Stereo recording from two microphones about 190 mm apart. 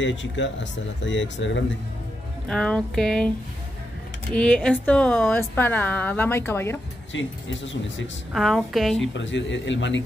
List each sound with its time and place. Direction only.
0.0 s speech: 75° left (ahead or behind)
2.4 s a woman's voice: 5° left (ahead or behind)
7.1 s speech: 75° left (ahead or behind)
8.3 s speech: centre (ahead or behind)
9.0 s speech: 75° left (ahead or behind)